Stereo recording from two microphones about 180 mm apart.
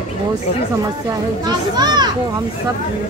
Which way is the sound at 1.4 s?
25° right (ahead or behind).